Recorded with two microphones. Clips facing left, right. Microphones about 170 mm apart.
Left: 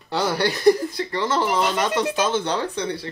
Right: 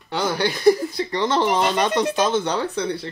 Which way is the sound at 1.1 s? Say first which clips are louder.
Right 2 dB; 20° right (ahead or behind).